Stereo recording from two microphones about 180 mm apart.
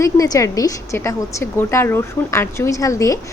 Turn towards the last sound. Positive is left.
turn(degrees=15)  # may be behind; listen again after turning